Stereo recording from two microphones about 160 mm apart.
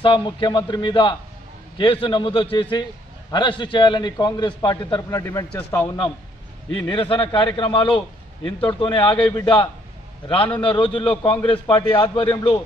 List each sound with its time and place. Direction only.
0.0 s a man's voice: 30° left (ahead or behind); by 5.9 s 10° left (ahead or behind)
6.9 s a man's voice: 30° left (ahead or behind)